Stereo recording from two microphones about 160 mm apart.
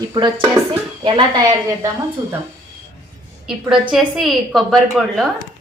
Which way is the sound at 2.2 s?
15° right (ahead or behind).